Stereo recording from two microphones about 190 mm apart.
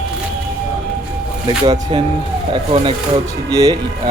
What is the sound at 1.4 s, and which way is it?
Speech, 20° right (ahead or behind).